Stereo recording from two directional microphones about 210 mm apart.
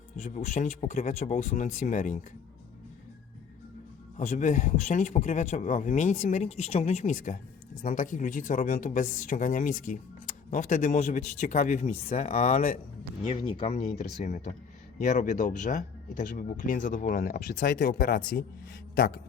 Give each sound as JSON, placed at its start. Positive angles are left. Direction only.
{"t": 0.2, "sound": "speech", "side_deg": 35}
{"t": 4.2, "sound": "speech", "side_deg": 35}
{"t": 13.2, "sound": "speech", "side_deg": 25}